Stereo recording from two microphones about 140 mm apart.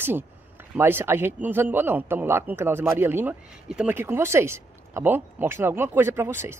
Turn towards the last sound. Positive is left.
turn(degrees=-20)  # may be behind; listen again after turning